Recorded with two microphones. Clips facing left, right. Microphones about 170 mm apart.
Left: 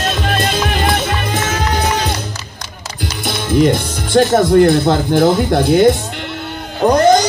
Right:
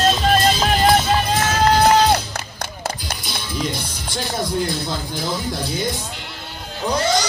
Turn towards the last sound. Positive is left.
turn(degrees=55)  # may be behind; listen again after turning